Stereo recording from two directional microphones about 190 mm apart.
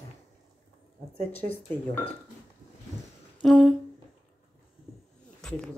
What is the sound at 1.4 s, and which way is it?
Speech, 40° right (ahead or behind).